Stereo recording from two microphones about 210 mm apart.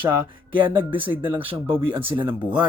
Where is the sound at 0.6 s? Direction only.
25° right (ahead or behind).